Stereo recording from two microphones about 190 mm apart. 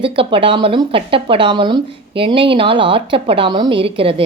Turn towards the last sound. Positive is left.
turn(degrees=-30)  # may be behind; listen again after turning